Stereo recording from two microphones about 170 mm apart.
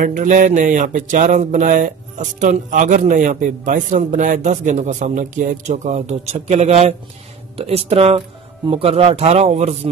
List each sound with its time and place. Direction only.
0.0 s mantra: 50° right (ahead or behind)
7.5 s a man's voice: 35° right (ahead or behind)